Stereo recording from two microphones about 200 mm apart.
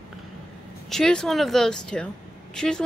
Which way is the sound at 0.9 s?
Centre (ahead or behind).